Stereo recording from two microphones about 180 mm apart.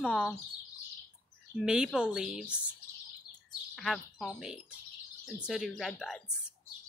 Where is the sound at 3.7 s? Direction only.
Centre (ahead or behind).